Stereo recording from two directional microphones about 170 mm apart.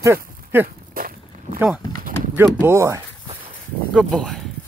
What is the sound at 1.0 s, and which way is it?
Walk, 60° right (ahead or behind).